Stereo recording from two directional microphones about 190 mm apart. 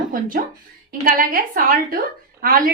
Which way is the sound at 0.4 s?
50° right (ahead or behind).